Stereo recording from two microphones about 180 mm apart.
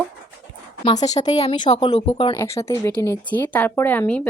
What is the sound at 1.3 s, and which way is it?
Speech, 30° left (ahead or behind).